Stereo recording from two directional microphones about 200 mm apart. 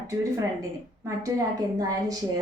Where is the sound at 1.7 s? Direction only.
20° right (ahead or behind).